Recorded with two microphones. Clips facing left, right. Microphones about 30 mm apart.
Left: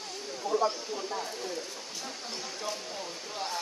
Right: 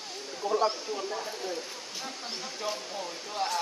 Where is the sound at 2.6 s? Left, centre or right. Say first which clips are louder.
Right 4 dB; centre.